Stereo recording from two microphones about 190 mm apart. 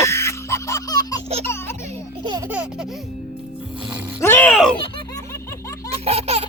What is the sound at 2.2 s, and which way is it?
Laughter, 20° right (ahead or behind).